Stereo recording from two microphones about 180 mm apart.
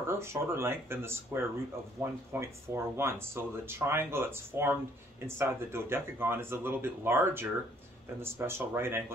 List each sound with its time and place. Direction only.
0.0 s speech: 15° right (ahead or behind)